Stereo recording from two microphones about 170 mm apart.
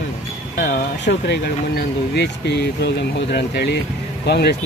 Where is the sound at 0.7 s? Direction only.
90° left.